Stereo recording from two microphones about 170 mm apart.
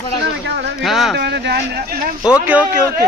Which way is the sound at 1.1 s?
80° right.